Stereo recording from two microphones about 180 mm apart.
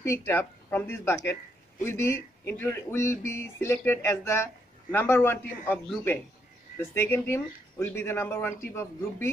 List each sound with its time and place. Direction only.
0.0 s speech: 15° left (ahead or behind)